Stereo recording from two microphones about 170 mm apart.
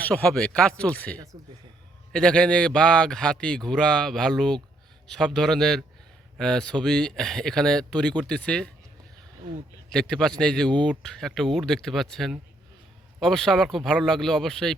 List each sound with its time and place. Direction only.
0.0 s a man's voice: 5° left (ahead or behind)
9.9 s a man's voice: 5° left (ahead or behind)